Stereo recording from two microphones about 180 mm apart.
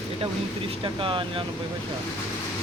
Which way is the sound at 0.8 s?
30° right (ahead or behind).